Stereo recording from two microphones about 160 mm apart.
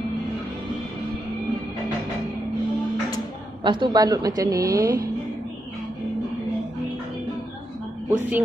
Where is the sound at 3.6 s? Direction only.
30° right (ahead or behind).